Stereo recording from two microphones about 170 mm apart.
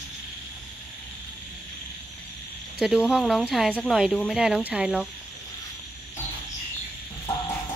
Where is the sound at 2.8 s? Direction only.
5° right (ahead or behind).